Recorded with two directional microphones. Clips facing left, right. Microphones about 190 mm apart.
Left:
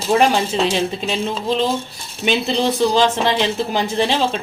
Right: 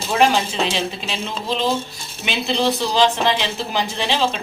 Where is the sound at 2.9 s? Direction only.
45° left (ahead or behind).